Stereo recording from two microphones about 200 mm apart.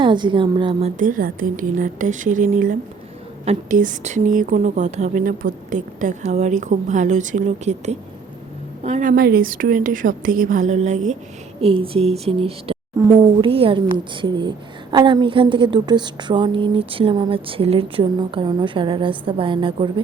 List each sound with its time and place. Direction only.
0.0 s a woman's voice: 25° right (ahead or behind)